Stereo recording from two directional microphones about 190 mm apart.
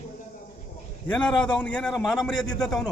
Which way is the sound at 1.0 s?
5° left (ahead or behind).